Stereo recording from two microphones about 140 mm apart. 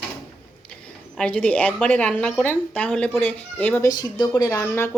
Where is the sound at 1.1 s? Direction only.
10° left (ahead or behind).